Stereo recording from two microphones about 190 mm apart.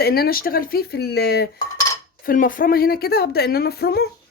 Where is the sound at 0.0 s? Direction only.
55° left (ahead or behind).